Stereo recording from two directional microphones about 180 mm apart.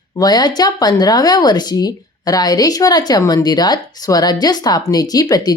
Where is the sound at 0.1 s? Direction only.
20° left (ahead or behind).